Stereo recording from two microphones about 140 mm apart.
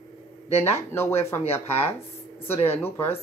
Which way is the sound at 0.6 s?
20° left (ahead or behind).